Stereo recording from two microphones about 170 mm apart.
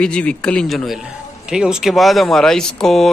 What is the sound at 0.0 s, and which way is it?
A man's voice, 5° left (ahead or behind).